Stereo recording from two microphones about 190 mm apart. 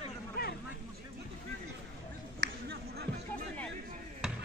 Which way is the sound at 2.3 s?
55° right (ahead or behind).